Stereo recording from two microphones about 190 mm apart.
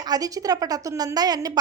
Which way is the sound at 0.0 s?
20° right (ahead or behind).